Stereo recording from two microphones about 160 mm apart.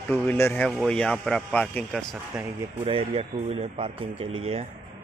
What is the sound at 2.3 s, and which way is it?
Speech, 5° right (ahead or behind).